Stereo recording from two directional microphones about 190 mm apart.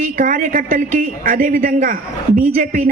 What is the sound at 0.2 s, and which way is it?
A woman's voice, 45° right (ahead or behind).